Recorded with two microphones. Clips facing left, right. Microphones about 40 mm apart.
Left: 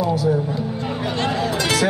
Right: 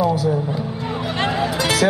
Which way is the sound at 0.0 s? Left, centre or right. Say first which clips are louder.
Right 1 dB; centre.